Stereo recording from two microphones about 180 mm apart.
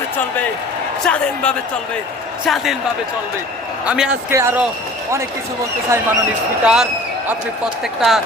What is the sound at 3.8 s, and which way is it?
Speech, 5° right (ahead or behind).